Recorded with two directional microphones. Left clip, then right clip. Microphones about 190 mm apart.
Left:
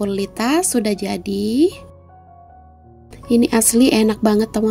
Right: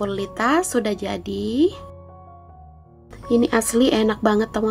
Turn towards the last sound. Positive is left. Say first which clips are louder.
# left 2 dB
turn(degrees=40)  # may be behind; listen again after turning